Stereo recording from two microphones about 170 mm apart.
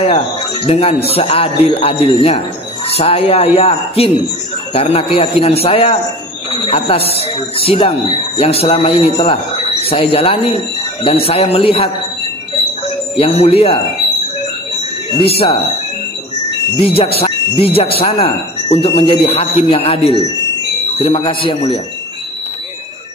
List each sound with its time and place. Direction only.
0.0 s speech: 35° left (ahead or behind)
13.1 s speech: 35° left (ahead or behind)
15.0 s speech: 30° left (ahead or behind)
16.7 s speech: 30° left (ahead or behind)